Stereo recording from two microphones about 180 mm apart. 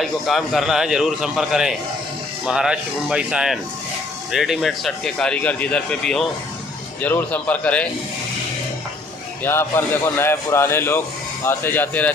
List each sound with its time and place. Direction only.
0.0 s a man's voice: centre (ahead or behind)
9.4 s a man's voice: 15° left (ahead or behind)